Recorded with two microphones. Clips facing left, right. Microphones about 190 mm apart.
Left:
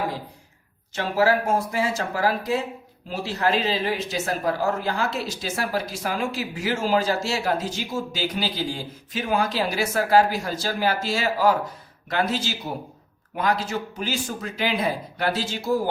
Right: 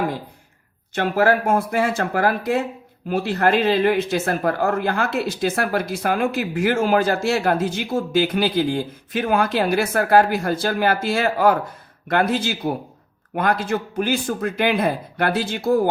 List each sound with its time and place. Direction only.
0.9 s speech: 55° right (ahead or behind)